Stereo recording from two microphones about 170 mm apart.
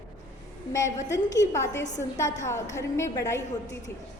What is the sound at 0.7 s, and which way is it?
A woman's voice, 20° left (ahead or behind).